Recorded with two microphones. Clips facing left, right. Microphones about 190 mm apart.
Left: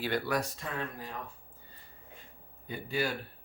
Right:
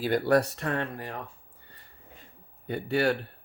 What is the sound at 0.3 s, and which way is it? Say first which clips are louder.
Speech: right 9 dB; 70° right (ahead or behind).